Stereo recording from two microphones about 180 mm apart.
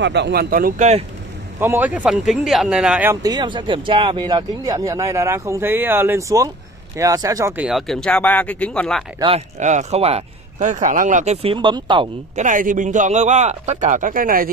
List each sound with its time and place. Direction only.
0.0 s a man's voice: 70° right (ahead or behind); by 1.0 s 40° right (ahead or behind)
1.6 s speech: 10° right (ahead or behind)
3.2 s speech: 20° right (ahead or behind)
7.6 s speech: centre (ahead or behind)
9.6 s speech: 40° right (ahead or behind)
11.5 s speech: 25° right (ahead or behind)
12.4 s a man's voice: 45° right (ahead or behind)